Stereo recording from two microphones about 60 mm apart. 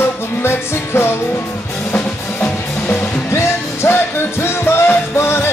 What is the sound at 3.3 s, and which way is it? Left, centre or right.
Music, left.